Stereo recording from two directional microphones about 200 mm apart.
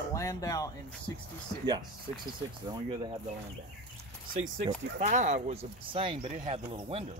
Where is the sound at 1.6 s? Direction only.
20° right (ahead or behind).